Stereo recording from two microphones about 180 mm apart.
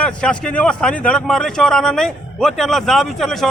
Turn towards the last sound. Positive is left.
turn(degrees=0)  # may be behind; listen again after turning